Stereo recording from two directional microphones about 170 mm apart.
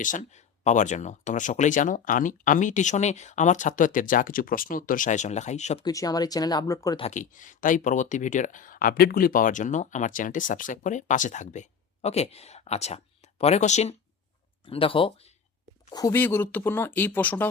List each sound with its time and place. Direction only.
0.0 s speech: 50° left (ahead or behind)
5.8 s speech: 20° left (ahead or behind)
7.0 s speech: 45° left (ahead or behind); by 15.3 s 30° left (ahead or behind)
15.9 s speech: 20° left (ahead or behind)